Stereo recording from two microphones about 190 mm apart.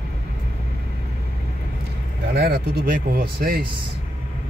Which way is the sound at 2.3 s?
55° right (ahead or behind).